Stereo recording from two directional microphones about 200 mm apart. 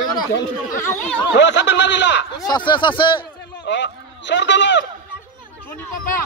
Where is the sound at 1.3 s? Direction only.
60° left (ahead or behind).